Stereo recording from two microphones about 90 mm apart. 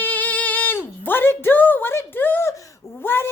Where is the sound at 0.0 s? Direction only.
20° left (ahead or behind).